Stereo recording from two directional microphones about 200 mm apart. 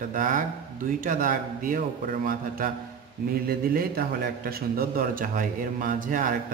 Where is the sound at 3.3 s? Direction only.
45° right (ahead or behind).